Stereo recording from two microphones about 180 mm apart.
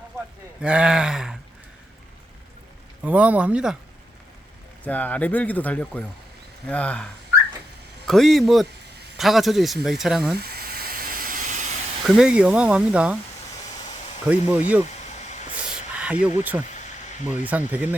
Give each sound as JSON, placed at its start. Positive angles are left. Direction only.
{"t": 0.6, "sound": "speech", "side_deg": -5}
{"t": 3.0, "sound": "speech", "side_deg": -10}
{"t": 4.8, "sound": "speech", "side_deg": 10}
{"t": 10.3, "sound": "steam", "side_deg": -60}
{"t": 12.0, "sound": "speech", "side_deg": -5}
{"t": 14.3, "sound": "speech", "side_deg": -10}
{"t": 14.8, "sound": "a sound", "side_deg": 40}
{"t": 15.5, "sound": "a sound", "side_deg": -5}
{"t": 16.3, "sound": "speech", "side_deg": -10}
{"t": 16.7, "sound": "a sound", "side_deg": 40}
{"t": 17.3, "sound": "speech", "side_deg": -10}